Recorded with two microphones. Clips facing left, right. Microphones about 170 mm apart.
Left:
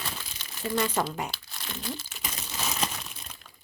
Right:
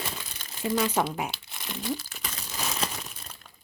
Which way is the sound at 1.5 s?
15° right (ahead or behind).